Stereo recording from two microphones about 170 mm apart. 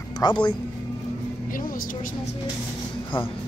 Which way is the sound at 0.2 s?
25° left (ahead or behind).